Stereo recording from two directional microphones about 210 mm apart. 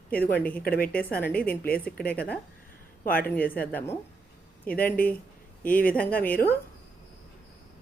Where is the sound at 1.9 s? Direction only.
5° left (ahead or behind).